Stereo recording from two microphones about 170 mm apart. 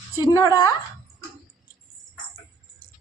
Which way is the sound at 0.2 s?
25° left (ahead or behind).